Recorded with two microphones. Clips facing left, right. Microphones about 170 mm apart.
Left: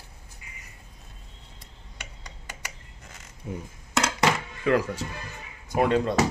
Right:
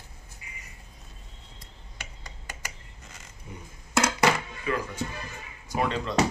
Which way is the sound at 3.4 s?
85° left.